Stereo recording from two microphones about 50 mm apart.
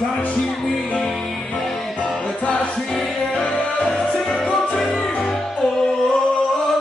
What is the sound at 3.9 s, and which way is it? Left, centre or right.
Music, centre.